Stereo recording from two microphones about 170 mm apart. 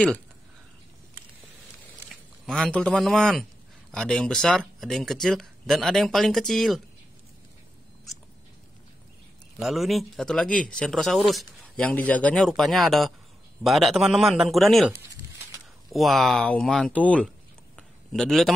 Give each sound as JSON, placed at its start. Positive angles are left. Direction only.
{"t": 2.4, "sound": "speech", "side_deg": 5}
{"t": 9.6, "sound": "speech", "side_deg": 0}
{"t": 15.9, "sound": "speech", "side_deg": 0}
{"t": 17.7, "sound": "a sound", "side_deg": 5}